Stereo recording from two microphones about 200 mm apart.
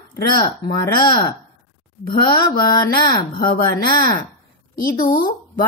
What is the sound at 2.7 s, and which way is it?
Speech, 20° left (ahead or behind).